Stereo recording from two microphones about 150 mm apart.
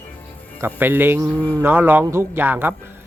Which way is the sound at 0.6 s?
15° right (ahead or behind).